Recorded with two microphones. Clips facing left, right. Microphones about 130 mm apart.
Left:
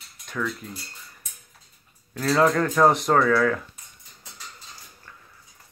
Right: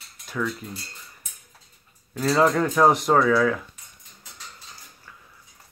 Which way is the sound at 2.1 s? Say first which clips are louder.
Even; 5° right (ahead or behind).